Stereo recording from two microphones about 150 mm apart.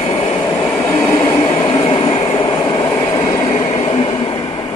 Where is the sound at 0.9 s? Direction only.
20° left (ahead or behind).